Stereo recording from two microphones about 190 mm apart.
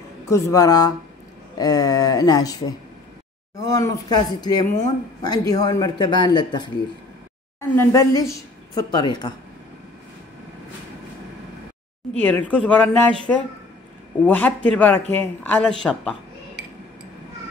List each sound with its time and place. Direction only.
0.3 s a man's voice: 20° left (ahead or behind)
7.7 s a woman's voice: 15° left (ahead or behind)
12.1 s a woman's voice: 5° left (ahead or behind)